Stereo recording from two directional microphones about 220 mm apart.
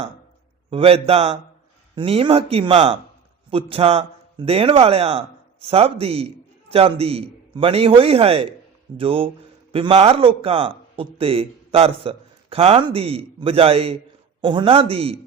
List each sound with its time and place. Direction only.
0.7 s speech: 25° right (ahead or behind)